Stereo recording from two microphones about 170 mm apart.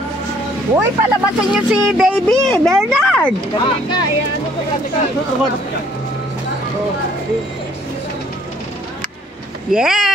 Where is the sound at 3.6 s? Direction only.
25° left (ahead or behind).